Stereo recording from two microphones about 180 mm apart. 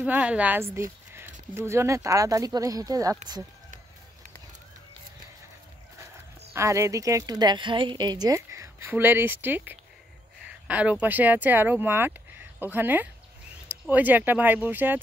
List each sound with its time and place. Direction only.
0.0 s speech: 5° right (ahead or behind)
6.5 s a woman's voice: 15° right (ahead or behind)